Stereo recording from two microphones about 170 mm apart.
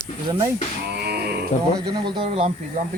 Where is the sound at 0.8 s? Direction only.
70° right (ahead or behind).